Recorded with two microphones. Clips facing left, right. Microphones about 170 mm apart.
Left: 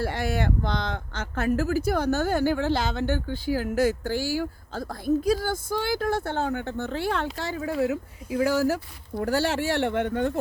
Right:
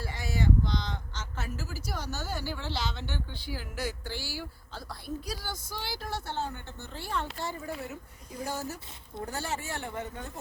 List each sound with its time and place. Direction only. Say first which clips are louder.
0.0 s speech: left 6 dB; 60° left (ahead or behind)
7.3 s speech: left 9 dB; 90° left; by 10.3 s 70° left (ahead or behind)